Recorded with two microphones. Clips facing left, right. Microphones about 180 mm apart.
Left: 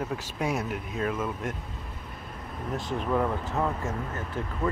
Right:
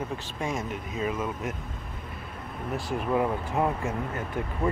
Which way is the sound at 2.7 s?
10° right (ahead or behind).